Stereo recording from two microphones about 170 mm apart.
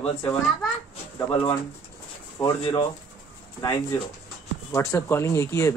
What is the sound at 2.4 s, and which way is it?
Speech, 30° left (ahead or behind).